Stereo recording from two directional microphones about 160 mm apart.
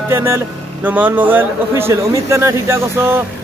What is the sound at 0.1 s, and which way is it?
Speech, 15° right (ahead or behind).